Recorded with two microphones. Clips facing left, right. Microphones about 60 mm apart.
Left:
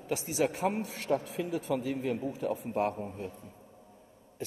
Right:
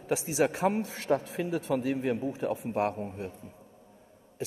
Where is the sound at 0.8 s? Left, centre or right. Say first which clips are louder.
Right 2 dB; right.